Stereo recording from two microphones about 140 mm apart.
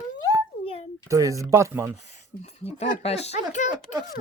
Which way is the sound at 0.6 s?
45° left (ahead or behind).